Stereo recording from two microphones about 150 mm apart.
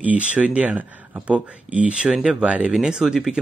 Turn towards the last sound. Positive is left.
turn(degrees=-5)  # may be behind; listen again after turning